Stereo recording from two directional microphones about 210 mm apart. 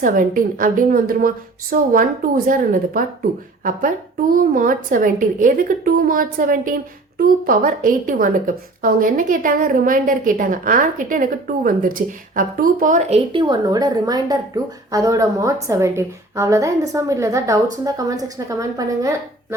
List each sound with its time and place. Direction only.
0.0 s a woman's voice: 40° right (ahead or behind); by 19.5 s 15° right (ahead or behind)